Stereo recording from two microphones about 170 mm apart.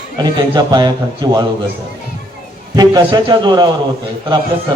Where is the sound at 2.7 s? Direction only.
25° right (ahead or behind).